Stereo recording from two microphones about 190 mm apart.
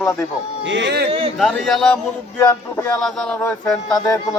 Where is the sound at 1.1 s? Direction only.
30° right (ahead or behind).